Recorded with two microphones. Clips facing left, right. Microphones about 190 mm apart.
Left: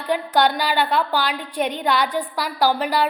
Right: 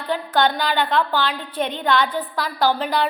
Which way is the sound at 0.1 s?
10° left (ahead or behind).